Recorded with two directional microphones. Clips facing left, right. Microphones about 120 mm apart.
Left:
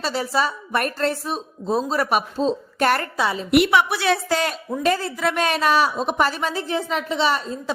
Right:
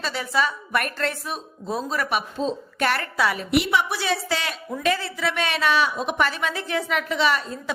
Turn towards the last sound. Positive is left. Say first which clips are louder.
# left 1 dB
turn(degrees=30)  # may be behind; listen again after turning